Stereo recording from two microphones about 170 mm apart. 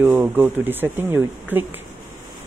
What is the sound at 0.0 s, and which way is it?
Speech, 10° right (ahead or behind).